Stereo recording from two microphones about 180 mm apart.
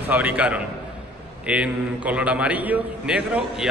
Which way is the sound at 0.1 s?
10° right (ahead or behind).